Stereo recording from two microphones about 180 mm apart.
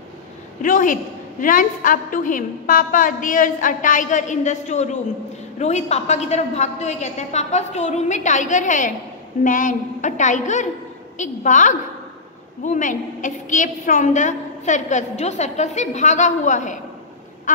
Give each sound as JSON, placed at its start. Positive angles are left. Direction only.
{"t": 0.6, "sound": "a woman's voice", "side_deg": 45}